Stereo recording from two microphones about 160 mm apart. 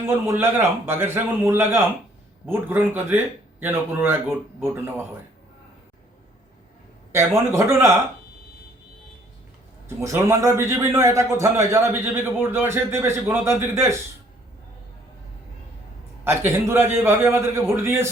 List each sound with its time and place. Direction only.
0.1 s a man's voice: 15° right (ahead or behind)
7.1 s a man's voice: 15° right (ahead or behind)
10.0 s a man's voice: 20° right (ahead or behind)
16.2 s a man's voice: 15° right (ahead or behind)